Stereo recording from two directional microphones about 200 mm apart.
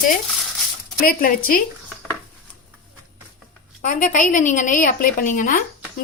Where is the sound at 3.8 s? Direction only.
40° left (ahead or behind).